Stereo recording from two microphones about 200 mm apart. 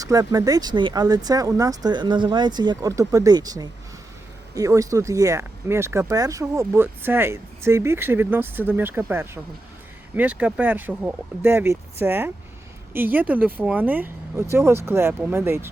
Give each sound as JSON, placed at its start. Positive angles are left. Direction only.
{"t": 0.0, "sound": "speech", "side_deg": -15}